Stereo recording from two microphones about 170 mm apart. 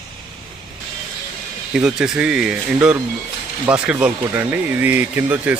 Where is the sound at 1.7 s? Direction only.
5° right (ahead or behind).